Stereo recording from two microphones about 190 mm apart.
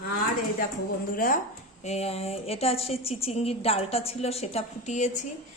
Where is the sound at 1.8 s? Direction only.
35° left (ahead or behind).